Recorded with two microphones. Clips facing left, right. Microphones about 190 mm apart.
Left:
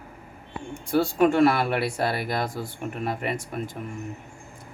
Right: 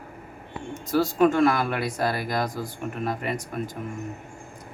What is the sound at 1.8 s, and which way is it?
Speech, 25° left (ahead or behind).